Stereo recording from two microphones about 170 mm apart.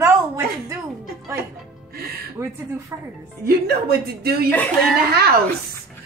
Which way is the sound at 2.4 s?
20° right (ahead or behind).